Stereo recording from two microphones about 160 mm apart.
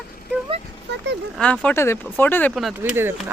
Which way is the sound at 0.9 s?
90° right.